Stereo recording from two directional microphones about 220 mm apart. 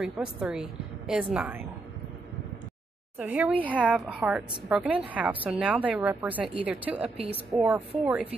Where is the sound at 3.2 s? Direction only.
5° right (ahead or behind).